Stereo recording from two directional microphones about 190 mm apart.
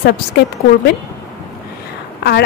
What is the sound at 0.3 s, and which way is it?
Speech, 60° left (ahead or behind).